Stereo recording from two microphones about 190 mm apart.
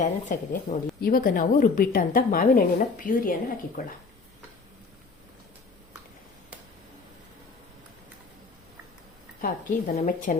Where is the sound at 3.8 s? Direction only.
45° left (ahead or behind).